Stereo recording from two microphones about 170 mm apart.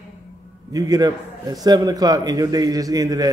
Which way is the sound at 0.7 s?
20° right (ahead or behind).